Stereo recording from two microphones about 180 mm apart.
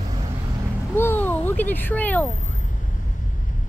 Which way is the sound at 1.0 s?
10° left (ahead or behind).